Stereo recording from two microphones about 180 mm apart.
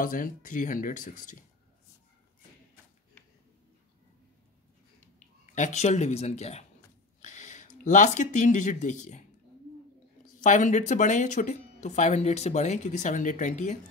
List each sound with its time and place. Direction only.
0.0 s speech: 50° left (ahead or behind)
5.5 s speech: 40° left (ahead or behind)
10.4 s speech: 45° left (ahead or behind)